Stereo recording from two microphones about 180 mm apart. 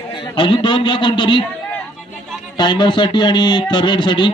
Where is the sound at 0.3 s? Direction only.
25° left (ahead or behind).